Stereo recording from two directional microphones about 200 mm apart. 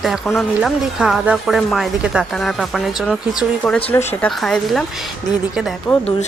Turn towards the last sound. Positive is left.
turn(degrees=20)  # may be behind; listen again after turning